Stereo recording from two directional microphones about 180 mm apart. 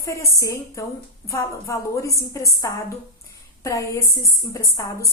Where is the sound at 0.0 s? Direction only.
15° left (ahead or behind).